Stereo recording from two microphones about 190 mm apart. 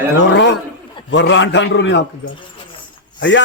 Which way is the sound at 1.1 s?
75° left (ahead or behind).